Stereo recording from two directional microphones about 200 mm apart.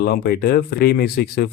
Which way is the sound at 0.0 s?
50° left (ahead or behind).